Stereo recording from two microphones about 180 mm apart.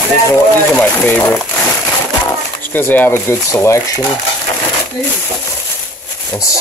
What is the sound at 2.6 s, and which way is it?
Speech, 10° left (ahead or behind).